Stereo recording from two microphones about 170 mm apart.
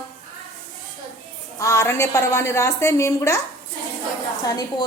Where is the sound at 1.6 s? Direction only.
15° left (ahead or behind).